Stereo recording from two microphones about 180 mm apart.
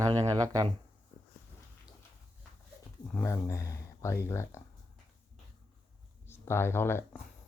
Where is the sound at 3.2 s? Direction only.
15° left (ahead or behind).